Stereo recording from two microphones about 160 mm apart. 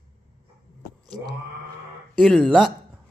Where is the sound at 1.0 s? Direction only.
25° right (ahead or behind).